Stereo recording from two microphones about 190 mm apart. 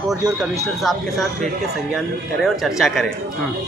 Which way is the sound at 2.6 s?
Centre (ahead or behind).